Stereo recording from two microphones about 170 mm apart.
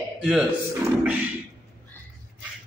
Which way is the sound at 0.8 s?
10° right (ahead or behind).